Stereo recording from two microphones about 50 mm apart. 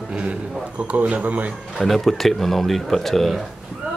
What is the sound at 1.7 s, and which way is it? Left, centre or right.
Speech, centre.